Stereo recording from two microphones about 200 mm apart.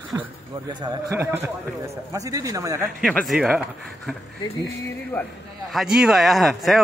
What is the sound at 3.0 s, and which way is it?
Speech, centre (ahead or behind).